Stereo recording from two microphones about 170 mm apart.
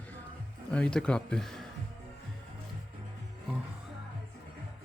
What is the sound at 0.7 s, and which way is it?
Speech, 5° left (ahead or behind).